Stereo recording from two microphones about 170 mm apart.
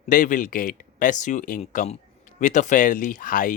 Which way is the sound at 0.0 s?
50° left (ahead or behind).